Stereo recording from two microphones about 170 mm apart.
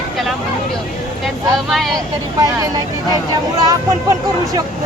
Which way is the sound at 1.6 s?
Centre (ahead or behind).